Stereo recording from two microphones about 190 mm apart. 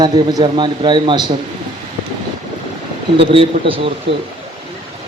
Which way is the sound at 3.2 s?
30° right (ahead or behind).